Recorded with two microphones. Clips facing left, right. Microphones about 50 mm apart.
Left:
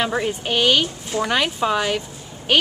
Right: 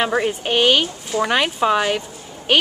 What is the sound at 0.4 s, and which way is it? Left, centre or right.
Speech, centre.